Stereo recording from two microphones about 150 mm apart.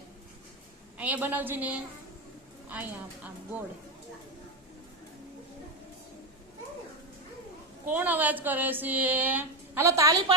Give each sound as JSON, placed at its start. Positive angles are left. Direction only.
{"t": 0.9, "sound": "speech", "side_deg": -10}
{"t": 7.9, "sound": "speech", "side_deg": -10}